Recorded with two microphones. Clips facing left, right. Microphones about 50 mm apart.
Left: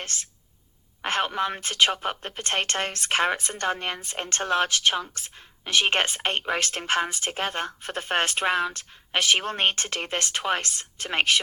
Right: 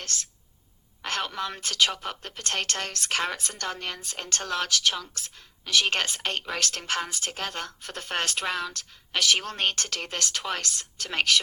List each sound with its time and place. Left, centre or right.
0.0 s a woman's voice: left